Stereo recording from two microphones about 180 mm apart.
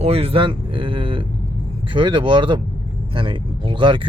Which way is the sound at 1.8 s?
30° right (ahead or behind).